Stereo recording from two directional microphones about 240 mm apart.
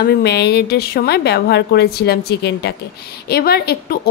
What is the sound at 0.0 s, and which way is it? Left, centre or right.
A woman's voice, left.